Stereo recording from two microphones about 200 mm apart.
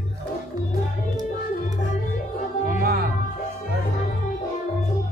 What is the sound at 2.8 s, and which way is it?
Music, 50° right (ahead or behind).